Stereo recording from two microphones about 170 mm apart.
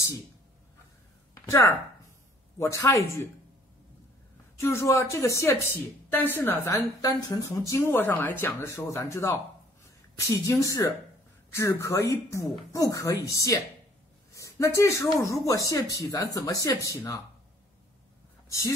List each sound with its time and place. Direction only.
1.3 s a woman's voice: 15° left (ahead or behind)
4.6 s a woman's voice: 15° left (ahead or behind)
10.4 s a woman's voice: 20° left (ahead or behind)
14.3 s a sound: 20° left (ahead or behind)
15.1 s speech: 20° left (ahead or behind)